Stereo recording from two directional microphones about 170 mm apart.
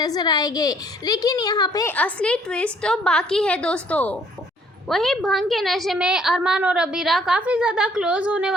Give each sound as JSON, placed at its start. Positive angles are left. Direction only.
{"t": 0.0, "sound": "a woman's voice", "side_deg": 25}
{"t": 2.0, "sound": "a woman's voice", "side_deg": 5}